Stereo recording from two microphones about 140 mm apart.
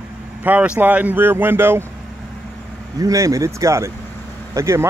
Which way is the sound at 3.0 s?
25° right (ahead or behind).